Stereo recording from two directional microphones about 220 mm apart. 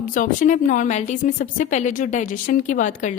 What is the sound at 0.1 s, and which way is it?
A woman's voice, 35° left (ahead or behind).